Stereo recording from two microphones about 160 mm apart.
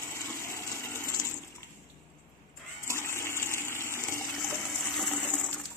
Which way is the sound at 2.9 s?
15° left (ahead or behind).